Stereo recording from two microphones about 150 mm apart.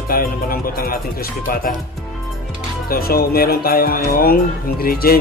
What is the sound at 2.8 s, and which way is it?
Speech, 90° left.